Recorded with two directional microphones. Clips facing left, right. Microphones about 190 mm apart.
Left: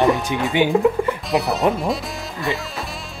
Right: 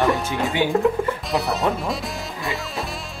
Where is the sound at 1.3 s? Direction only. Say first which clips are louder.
Left 3 dB; centre (ahead or behind).